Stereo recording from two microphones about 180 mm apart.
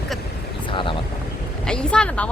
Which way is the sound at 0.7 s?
30° left (ahead or behind).